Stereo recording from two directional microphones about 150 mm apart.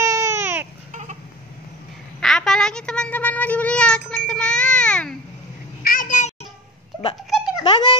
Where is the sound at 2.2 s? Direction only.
5° left (ahead or behind).